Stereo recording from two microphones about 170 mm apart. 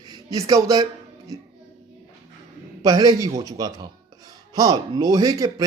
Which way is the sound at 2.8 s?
20° right (ahead or behind).